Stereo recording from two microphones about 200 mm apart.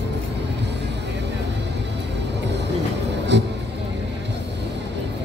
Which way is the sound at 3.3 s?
60° right (ahead or behind).